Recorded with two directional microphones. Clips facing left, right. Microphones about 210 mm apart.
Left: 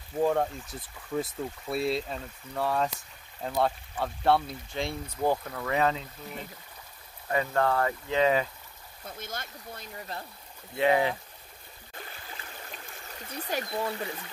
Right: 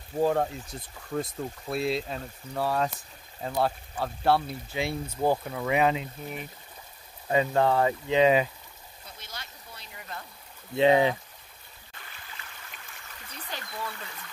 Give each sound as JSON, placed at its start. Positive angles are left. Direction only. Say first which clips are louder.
{"t": 0.2, "sound": "speech", "louder": "right 1 dB", "side_deg": -5}
{"t": 9.0, "sound": "a sound", "louder": "left 6 dB", "side_deg": 50}
{"t": 10.8, "sound": "speech", "louder": "right 4 dB", "side_deg": -20}
{"t": 12.4, "sound": "stream", "louder": "left 4 dB", "side_deg": 35}
{"t": 13.7, "sound": "speech", "louder": "left 6 dB", "side_deg": 35}